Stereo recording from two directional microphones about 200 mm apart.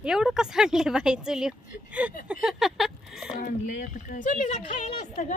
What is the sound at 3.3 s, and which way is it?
Speech, 45° left (ahead or behind).